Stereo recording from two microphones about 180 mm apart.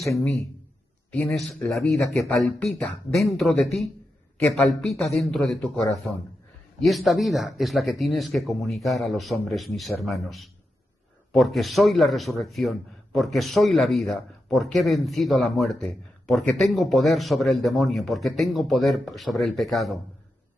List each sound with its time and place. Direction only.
0.0 s speech: 15° left (ahead or behind)
1.3 s a man's voice: centre (ahead or behind)